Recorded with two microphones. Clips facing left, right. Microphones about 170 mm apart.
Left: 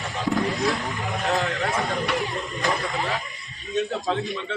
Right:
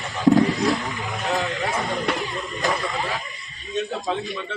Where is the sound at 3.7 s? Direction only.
Centre (ahead or behind).